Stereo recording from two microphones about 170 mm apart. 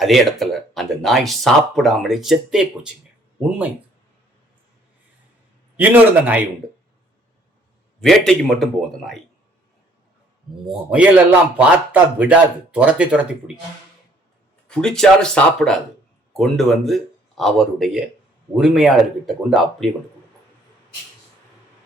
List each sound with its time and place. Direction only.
0.0 s speech: centre (ahead or behind)
5.7 s speech: 10° right (ahead or behind)
8.0 s speech: centre (ahead or behind)
10.7 s speech: 5° right (ahead or behind)
14.7 s speech: 5° left (ahead or behind)